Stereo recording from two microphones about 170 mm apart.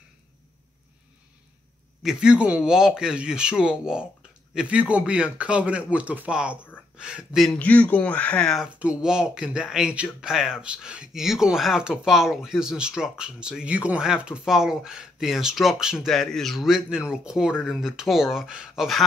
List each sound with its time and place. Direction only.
2.0 s speech: 5° right (ahead or behind)